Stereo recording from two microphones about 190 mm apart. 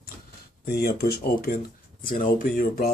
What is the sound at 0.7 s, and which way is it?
Speech, 55° left (ahead or behind).